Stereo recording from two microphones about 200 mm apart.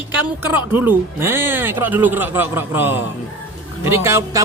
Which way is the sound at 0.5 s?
10° right (ahead or behind).